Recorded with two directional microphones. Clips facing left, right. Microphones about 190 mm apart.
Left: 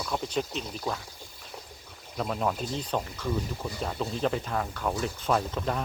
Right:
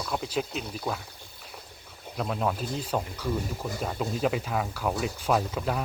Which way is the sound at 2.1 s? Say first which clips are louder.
Even; centre (ahead or behind).